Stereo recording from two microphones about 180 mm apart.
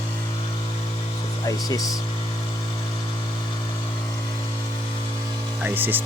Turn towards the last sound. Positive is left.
turn(degrees=-10)  # may be behind; listen again after turning